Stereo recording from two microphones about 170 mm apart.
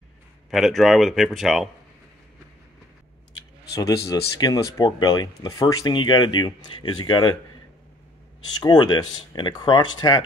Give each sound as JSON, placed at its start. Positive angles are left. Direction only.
{"t": 0.5, "sound": "speech", "side_deg": 0}
{"t": 3.7, "sound": "speech", "side_deg": 20}
{"t": 8.5, "sound": "speech", "side_deg": 25}